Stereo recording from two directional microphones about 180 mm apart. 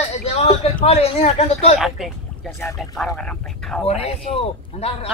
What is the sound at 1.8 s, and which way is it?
A woman's voice, centre (ahead or behind).